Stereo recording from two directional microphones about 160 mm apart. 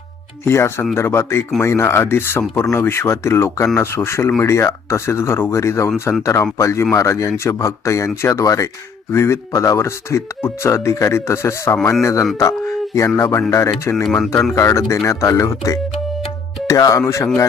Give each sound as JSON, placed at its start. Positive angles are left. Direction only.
{"t": 0.4, "sound": "speech", "side_deg": 15}
{"t": 11.8, "sound": "speech", "side_deg": 5}
{"t": 12.0, "sound": "speech", "side_deg": 20}
{"t": 13.9, "sound": "speech", "side_deg": 5}
{"t": 14.5, "sound": "speech", "side_deg": 20}